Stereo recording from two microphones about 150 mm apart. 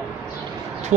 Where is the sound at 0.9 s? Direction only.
50° right (ahead or behind).